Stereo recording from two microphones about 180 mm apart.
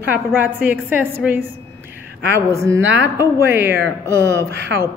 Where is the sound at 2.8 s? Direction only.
90° right.